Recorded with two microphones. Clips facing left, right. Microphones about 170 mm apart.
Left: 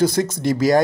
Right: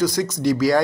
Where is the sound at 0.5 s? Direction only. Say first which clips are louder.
Left 3 dB; 20° left (ahead or behind).